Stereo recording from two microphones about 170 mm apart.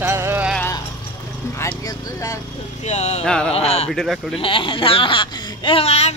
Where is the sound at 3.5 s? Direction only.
40° left (ahead or behind).